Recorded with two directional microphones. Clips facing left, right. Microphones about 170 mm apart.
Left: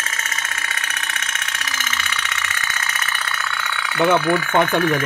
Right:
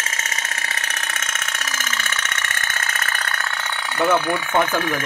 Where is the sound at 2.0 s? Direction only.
45° right (ahead or behind).